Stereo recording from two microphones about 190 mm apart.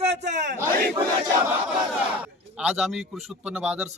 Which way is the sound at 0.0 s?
35° right (ahead or behind).